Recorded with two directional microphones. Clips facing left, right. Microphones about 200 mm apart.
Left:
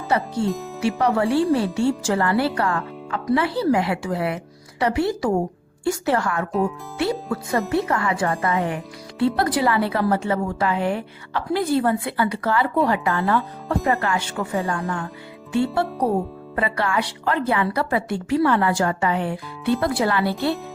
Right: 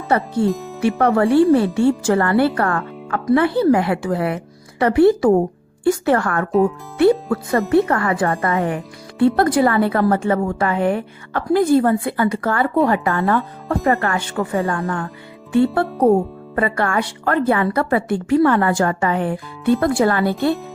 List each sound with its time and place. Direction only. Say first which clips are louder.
0.1 s speech: right 3 dB; 55° right (ahead or behind)
0.4 s speech: right 5 dB; centre (ahead or behind)
0.8 s speech: right 4 dB; 55° right (ahead or behind)